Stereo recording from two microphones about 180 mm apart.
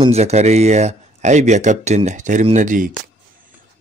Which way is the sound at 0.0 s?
35° right (ahead or behind).